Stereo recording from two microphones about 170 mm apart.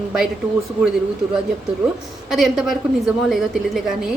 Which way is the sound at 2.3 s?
Centre (ahead or behind).